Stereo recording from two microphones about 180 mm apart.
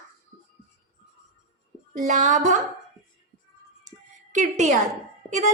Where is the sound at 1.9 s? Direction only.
45° right (ahead or behind).